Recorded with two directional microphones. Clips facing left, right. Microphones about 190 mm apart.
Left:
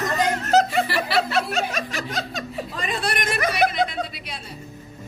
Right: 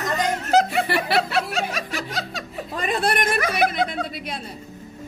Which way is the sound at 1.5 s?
5° right (ahead or behind).